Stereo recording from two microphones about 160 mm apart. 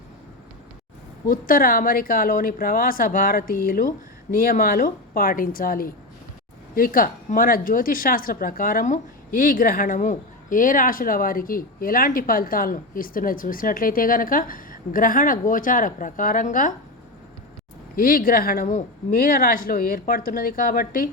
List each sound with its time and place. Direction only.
1.3 s speech: 60° left (ahead or behind)
17.9 s speech: 60° left (ahead or behind)